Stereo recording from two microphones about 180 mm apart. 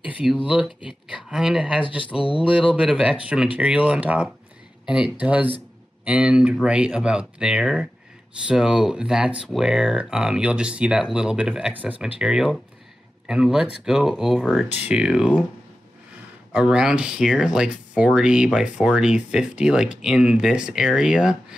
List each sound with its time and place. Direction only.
0.0 s speech: 5° right (ahead or behind)
2.1 s speech: 30° left (ahead or behind)
2.5 s speech: 5° right (ahead or behind)
16.5 s speech: 5° right (ahead or behind)